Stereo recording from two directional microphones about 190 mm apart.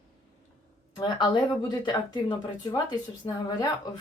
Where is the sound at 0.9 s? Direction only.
20° left (ahead or behind).